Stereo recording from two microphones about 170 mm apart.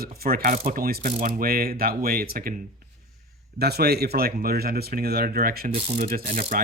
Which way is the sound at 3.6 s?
70° right (ahead or behind).